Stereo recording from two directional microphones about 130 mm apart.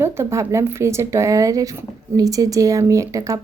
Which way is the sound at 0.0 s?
20° right (ahead or behind).